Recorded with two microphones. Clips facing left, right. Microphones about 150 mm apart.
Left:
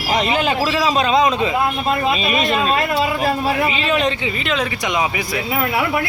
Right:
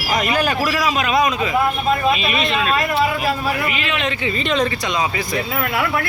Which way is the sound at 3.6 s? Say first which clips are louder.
Left 4 dB; 30° left (ahead or behind).